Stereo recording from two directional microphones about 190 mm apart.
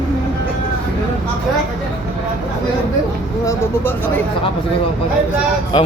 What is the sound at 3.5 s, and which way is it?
Speech, 10° left (ahead or behind).